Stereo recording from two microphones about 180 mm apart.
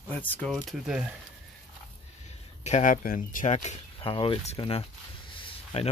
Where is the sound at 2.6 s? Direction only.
45° left (ahead or behind).